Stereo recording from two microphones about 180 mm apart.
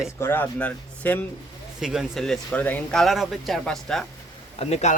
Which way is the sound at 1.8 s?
5° right (ahead or behind).